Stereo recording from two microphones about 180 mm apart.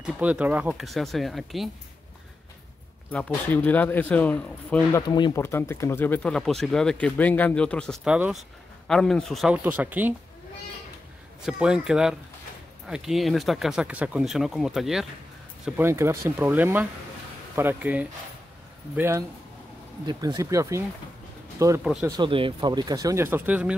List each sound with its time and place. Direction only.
0.0 s speech: 10° right (ahead or behind)
3.1 s speech: 10° left (ahead or behind)
5.0 s speech: 25° left (ahead or behind); by 10.1 s 10° right (ahead or behind)
11.4 s speech: 5° right (ahead or behind)